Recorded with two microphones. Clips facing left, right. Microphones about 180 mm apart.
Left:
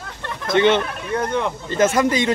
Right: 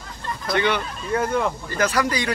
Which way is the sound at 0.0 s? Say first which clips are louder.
Left 1 dB; 70° left (ahead or behind).